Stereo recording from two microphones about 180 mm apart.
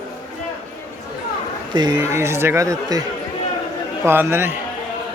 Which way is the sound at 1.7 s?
20° right (ahead or behind).